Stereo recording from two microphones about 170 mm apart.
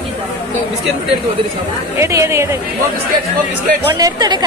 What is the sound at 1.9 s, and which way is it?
Speech, 15° right (ahead or behind).